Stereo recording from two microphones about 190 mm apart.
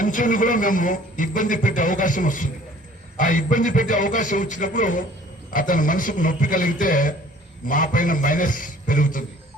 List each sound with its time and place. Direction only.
0.0 s a man's voice: 45° left (ahead or behind)